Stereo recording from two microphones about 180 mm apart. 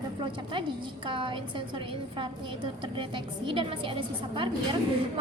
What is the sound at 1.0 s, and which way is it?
Speech, 30° right (ahead or behind).